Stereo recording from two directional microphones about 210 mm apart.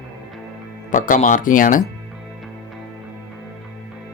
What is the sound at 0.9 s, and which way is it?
Speech, 40° left (ahead or behind).